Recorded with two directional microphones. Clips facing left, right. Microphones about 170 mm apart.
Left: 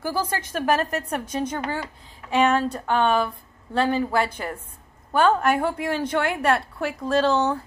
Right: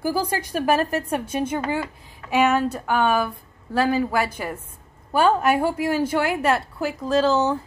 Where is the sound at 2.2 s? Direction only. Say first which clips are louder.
Right 1 dB; 10° right (ahead or behind).